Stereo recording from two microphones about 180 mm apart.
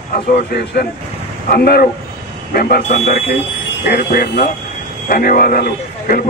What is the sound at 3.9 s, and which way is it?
Speech, 60° left (ahead or behind).